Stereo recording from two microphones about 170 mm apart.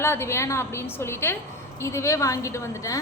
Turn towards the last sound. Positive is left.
turn(degrees=20)  # may be behind; listen again after turning